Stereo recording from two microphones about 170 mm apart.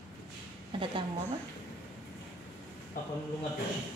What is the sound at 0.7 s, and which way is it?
Speech, 30° right (ahead or behind).